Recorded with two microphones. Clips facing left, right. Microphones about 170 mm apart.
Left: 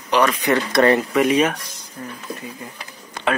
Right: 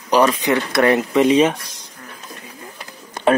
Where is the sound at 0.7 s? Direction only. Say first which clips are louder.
Even; 15° right (ahead or behind).